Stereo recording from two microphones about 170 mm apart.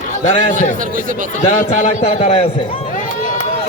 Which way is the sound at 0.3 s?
45° left (ahead or behind).